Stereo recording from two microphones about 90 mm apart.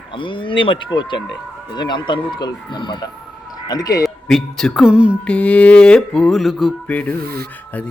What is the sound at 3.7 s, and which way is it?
Speech, 45° left (ahead or behind).